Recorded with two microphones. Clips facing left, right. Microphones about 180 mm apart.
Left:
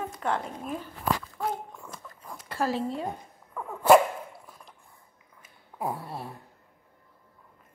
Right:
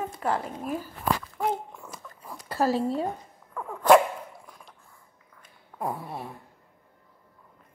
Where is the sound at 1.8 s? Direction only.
10° right (ahead or behind).